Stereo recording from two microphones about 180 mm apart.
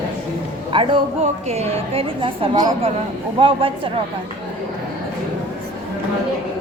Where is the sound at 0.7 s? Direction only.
30° right (ahead or behind).